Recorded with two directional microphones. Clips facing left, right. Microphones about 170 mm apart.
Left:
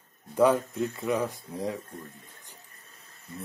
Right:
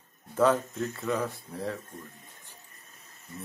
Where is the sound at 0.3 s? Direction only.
15° left (ahead or behind).